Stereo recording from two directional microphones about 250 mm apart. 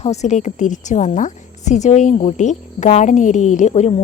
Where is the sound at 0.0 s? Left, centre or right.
Left.